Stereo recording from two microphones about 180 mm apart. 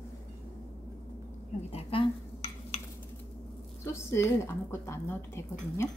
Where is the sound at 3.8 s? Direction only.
15° left (ahead or behind).